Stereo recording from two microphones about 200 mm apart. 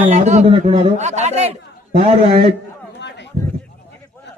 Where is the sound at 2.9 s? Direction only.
60° left (ahead or behind).